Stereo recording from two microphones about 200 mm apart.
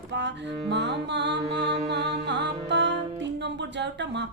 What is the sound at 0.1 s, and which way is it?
Music, 60° right (ahead or behind).